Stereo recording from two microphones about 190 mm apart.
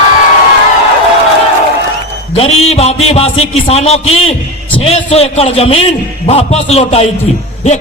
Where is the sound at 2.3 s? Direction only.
30° left (ahead or behind).